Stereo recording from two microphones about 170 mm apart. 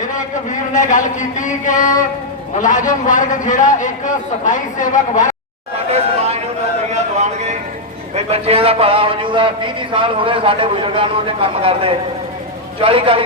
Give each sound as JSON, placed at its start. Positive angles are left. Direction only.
{"t": 0.7, "sound": "a man's voice", "side_deg": 50}
{"t": 5.9, "sound": "chatter", "side_deg": -40}
{"t": 6.9, "sound": "a sound", "side_deg": -40}
{"t": 8.1, "sound": "a man's voice", "side_deg": -35}